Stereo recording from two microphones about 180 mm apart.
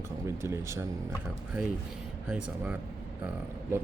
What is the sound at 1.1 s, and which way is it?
Speech, centre (ahead or behind).